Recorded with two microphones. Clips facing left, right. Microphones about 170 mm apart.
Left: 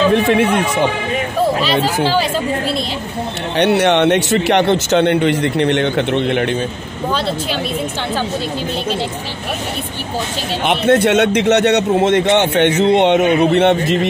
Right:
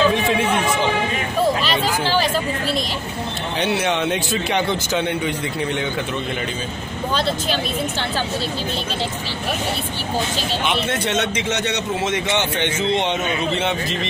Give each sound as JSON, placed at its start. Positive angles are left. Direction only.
{"t": 0.1, "sound": "a man's voice", "side_deg": 60}
{"t": 3.5, "sound": "a man's voice", "side_deg": 65}
{"t": 10.7, "sound": "a man's voice", "side_deg": 60}